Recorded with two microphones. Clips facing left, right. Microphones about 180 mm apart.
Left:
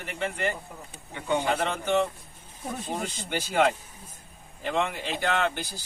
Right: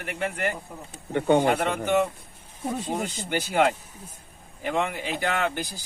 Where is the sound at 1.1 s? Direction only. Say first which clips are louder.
Right 7 dB; 60° right (ahead or behind).